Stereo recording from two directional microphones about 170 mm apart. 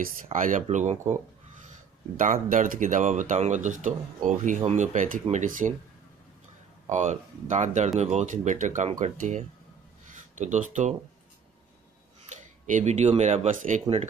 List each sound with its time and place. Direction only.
0.0 s speech: 50° right (ahead or behind)
2.1 s speech: 50° right (ahead or behind)
6.9 s speech: 45° right (ahead or behind)
12.4 s speech: 45° right (ahead or behind)